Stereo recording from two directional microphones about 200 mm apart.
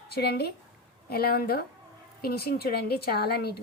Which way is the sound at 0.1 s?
55° left (ahead or behind).